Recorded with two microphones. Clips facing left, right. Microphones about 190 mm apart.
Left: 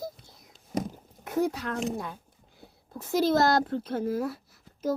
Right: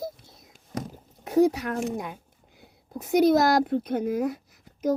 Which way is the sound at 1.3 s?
20° right (ahead or behind).